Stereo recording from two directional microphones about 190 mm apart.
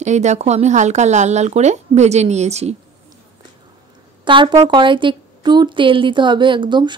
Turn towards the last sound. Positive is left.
turn(degrees=-25)  # may be behind; listen again after turning